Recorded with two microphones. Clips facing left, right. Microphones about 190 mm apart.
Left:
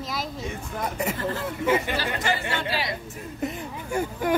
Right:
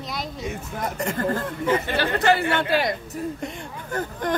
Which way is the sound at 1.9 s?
65° right (ahead or behind).